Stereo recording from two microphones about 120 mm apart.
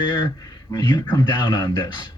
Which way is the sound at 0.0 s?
35° left (ahead or behind).